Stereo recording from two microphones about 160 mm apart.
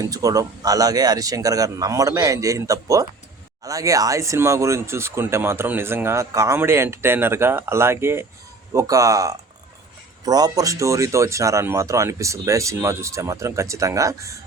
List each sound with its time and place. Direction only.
0.0 s speech: 20° right (ahead or behind)